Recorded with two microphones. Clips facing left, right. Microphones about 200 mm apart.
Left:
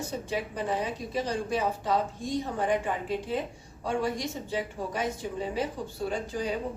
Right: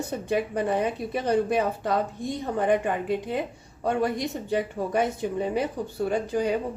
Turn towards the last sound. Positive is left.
turn(degrees=-60)  # may be behind; listen again after turning